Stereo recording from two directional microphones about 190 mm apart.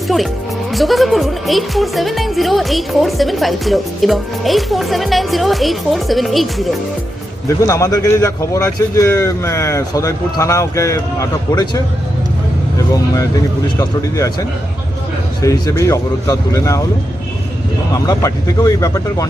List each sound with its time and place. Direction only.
0.7 s speech: centre (ahead or behind)
7.4 s a man's voice: 15° left (ahead or behind)
13.7 s a man's voice: 20° left (ahead or behind)
17.9 s a man's voice: 20° left (ahead or behind)